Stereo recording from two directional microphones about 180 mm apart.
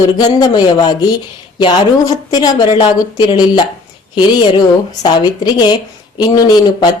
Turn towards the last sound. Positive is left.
turn(degrees=25)  # may be behind; listen again after turning